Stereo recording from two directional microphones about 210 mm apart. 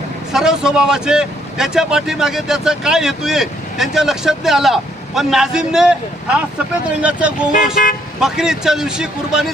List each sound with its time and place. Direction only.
0.3 s speech: 5° right (ahead or behind)
7.8 s speech: 40° left (ahead or behind)
8.2 s speech: 5° right (ahead or behind)